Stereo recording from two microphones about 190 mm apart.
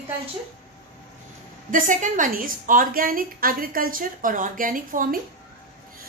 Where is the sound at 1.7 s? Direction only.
45° right (ahead or behind).